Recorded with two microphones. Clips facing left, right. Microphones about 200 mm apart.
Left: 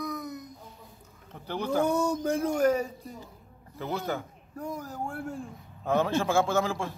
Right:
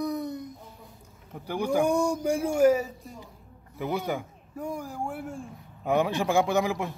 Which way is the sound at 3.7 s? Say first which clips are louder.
Right 2 dB; 15° right (ahead or behind).